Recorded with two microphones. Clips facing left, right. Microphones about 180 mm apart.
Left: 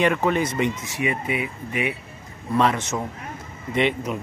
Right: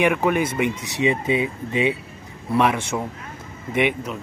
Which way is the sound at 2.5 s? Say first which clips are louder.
Right 1 dB; 10° right (ahead or behind).